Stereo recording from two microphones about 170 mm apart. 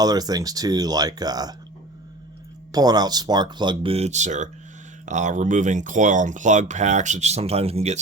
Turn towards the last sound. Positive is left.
turn(degrees=-35)  # may be behind; listen again after turning